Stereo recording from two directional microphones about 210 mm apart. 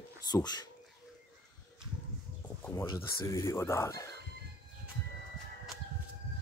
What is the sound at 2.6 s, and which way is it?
Speech, 15° left (ahead or behind).